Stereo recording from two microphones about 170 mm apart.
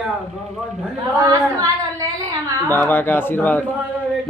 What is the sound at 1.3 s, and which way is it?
Speech, 20° right (ahead or behind).